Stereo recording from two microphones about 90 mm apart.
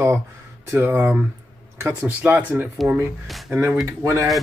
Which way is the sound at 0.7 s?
25° right (ahead or behind).